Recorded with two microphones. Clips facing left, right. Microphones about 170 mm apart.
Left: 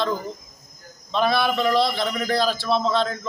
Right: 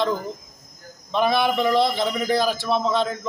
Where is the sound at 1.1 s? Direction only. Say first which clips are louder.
Right 1 dB; 15° right (ahead or behind).